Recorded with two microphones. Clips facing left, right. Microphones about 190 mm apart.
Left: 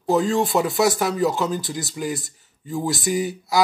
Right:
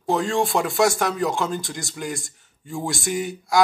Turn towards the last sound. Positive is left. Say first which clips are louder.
# left 1 dB
turn(degrees=0)  # may be behind; listen again after turning